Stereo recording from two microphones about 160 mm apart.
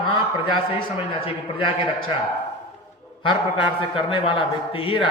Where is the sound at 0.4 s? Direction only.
35° left (ahead or behind).